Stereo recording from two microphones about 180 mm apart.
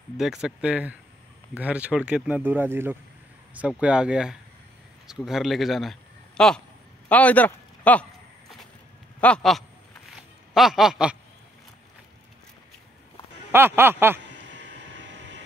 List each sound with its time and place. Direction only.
0.2 s speech: centre (ahead or behind)
7.1 s a sound: 10° left (ahead or behind)
9.2 s speech: 5° left (ahead or behind)
13.5 s speech: 10° right (ahead or behind)
14.5 s vehicle: 80° right